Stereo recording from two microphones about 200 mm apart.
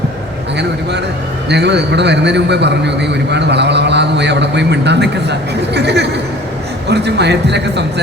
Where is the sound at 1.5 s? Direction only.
55° right (ahead or behind).